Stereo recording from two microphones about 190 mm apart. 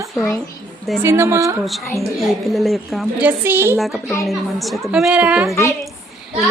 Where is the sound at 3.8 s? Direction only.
Centre (ahead or behind).